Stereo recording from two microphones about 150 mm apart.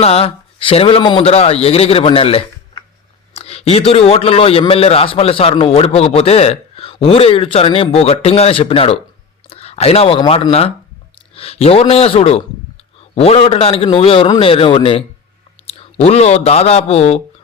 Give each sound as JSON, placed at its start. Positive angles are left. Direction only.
{"t": 0.0, "sound": "a man's voice", "side_deg": 40}